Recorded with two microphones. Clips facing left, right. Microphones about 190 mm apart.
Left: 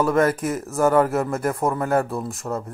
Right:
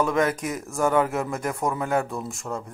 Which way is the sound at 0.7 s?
5° left (ahead or behind).